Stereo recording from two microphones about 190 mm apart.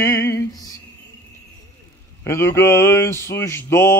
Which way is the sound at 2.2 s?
15° left (ahead or behind).